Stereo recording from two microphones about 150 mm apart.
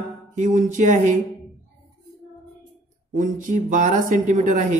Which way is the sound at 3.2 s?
60° right (ahead or behind).